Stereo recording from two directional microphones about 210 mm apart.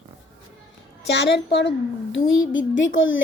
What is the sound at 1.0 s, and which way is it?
Speech, 55° left (ahead or behind).